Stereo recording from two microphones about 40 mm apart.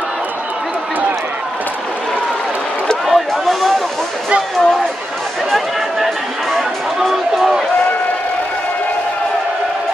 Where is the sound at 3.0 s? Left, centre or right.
Centre.